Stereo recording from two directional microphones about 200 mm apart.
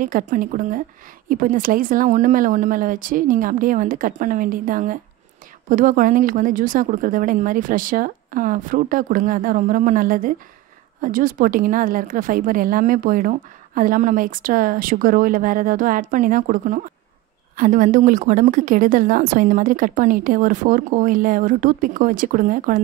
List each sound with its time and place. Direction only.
0.0 s a woman's voice: 45° right (ahead or behind)